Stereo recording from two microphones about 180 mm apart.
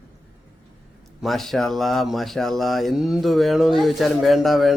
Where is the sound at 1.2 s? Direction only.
Centre (ahead or behind).